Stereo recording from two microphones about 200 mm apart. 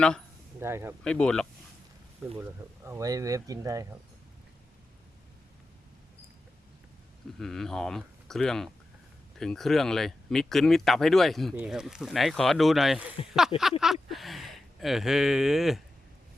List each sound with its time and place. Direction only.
0.6 s speech: 10° right (ahead or behind)
1.0 s speech: 5° left (ahead or behind)
2.4 s speech: 15° right (ahead or behind)
7.3 s speech: centre (ahead or behind)